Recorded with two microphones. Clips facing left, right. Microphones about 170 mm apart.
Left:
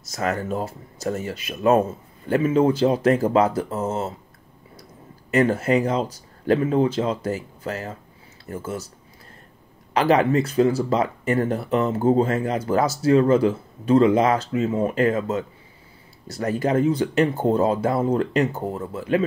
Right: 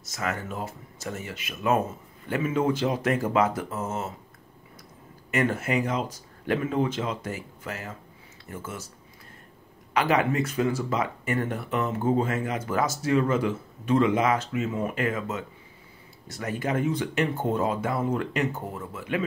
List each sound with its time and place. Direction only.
0.0 s speech: 35° left (ahead or behind)
5.3 s speech: 35° left (ahead or behind)
9.9 s speech: 35° left (ahead or behind)